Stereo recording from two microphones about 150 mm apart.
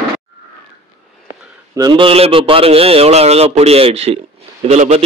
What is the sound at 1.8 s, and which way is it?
A man's voice, 35° right (ahead or behind).